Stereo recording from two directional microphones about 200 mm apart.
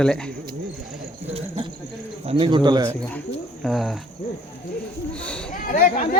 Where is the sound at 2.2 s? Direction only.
25° right (ahead or behind).